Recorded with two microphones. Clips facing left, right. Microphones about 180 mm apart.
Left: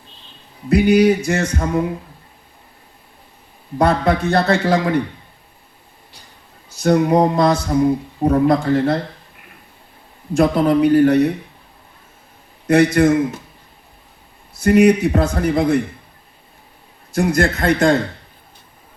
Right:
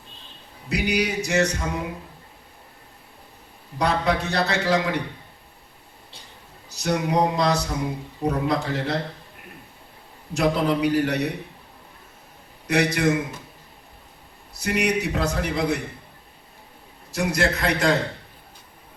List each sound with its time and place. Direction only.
0.7 s a man's voice: 55° left (ahead or behind)
3.8 s a man's voice: 55° left (ahead or behind)
6.7 s a sound: 55° left (ahead or behind)
8.2 s a man's voice: 55° left (ahead or behind)
10.3 s a man's voice: 50° left (ahead or behind)
12.6 s a man's voice: 50° left (ahead or behind)
14.6 s a man's voice: 50° left (ahead or behind)
17.1 s a man's voice: 50° left (ahead or behind)